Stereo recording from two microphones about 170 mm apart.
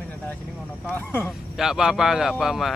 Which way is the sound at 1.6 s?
5° right (ahead or behind).